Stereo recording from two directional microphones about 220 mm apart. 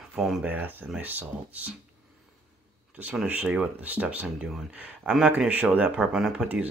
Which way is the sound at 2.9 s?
5° right (ahead or behind).